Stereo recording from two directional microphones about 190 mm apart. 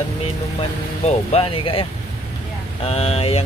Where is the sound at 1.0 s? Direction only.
30° left (ahead or behind).